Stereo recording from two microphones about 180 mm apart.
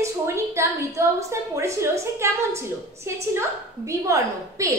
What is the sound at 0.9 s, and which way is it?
A woman's voice, 15° right (ahead or behind).